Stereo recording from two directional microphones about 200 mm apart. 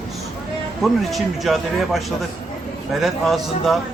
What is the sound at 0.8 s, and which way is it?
Speech, centre (ahead or behind).